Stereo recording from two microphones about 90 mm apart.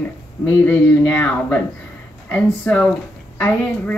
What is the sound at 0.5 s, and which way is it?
Speech, 20° left (ahead or behind).